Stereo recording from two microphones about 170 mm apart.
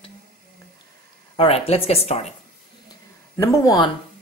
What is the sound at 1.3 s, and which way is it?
Speech, 35° left (ahead or behind).